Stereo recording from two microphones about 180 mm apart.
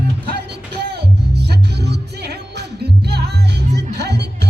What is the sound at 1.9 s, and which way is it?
Music, 65° right (ahead or behind).